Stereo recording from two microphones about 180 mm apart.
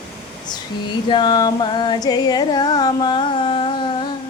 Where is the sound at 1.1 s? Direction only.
25° left (ahead or behind).